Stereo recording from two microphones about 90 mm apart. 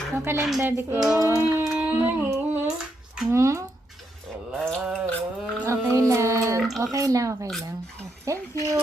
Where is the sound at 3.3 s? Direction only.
35° right (ahead or behind).